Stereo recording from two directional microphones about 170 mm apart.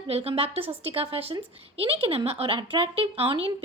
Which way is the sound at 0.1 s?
35° right (ahead or behind).